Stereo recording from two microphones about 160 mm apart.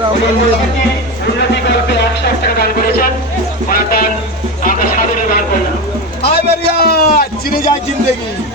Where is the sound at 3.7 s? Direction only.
65° left (ahead or behind).